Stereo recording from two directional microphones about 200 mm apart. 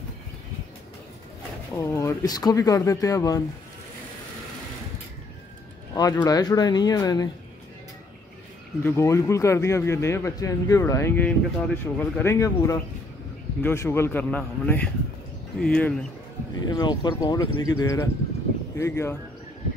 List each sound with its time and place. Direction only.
1.7 s a man's voice: 15° left (ahead or behind)
5.9 s speech: 20° left (ahead or behind)
8.8 s a man's voice: 10° left (ahead or behind)
16.5 s a man's voice: 20° left (ahead or behind)